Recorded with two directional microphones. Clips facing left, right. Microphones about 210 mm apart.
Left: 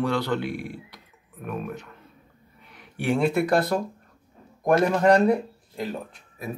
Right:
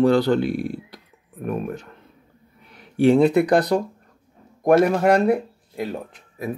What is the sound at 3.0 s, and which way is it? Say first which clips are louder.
Speech: right 7 dB; 20° right (ahead or behind).